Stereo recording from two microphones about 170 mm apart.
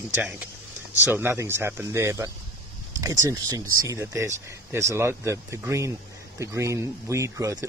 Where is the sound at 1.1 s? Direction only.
10° right (ahead or behind).